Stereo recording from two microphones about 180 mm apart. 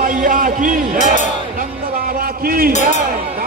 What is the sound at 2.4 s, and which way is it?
Speech, 55° right (ahead or behind).